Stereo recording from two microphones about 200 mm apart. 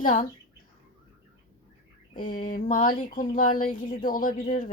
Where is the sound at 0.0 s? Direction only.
40° left (ahead or behind).